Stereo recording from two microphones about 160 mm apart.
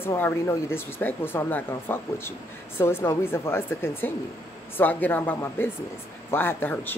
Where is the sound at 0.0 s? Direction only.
15° left (ahead or behind).